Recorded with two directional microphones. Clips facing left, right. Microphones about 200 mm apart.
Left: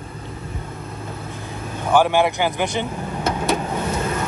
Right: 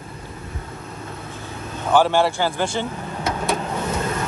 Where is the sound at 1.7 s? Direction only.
15° left (ahead or behind).